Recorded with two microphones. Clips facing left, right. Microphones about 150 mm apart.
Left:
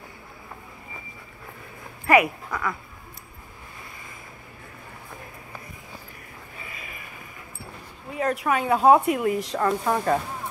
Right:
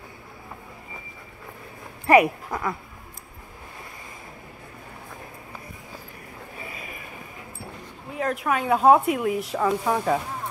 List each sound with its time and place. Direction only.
2.0 s speech: 30° right (ahead or behind)
8.1 s speech: centre (ahead or behind)